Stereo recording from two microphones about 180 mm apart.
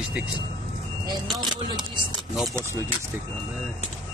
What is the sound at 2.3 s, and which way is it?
Speech, centre (ahead or behind).